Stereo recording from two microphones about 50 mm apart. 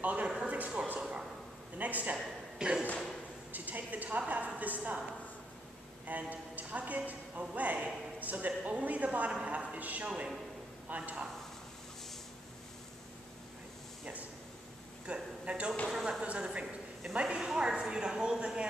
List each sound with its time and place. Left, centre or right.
0.0 s speech: right
0.4 s a sound: right
1.8 s a woman's voice: right
2.6 s speech: centre
3.5 s a woman's voice: right
6.0 s speech: right
15.1 s speech: right
15.9 s a sound: centre
16.2 s a sound: centre
17.1 s speech: right